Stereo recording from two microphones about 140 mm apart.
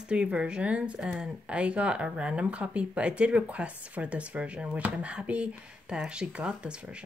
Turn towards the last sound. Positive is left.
turn(degrees=-10)  # may be behind; listen again after turning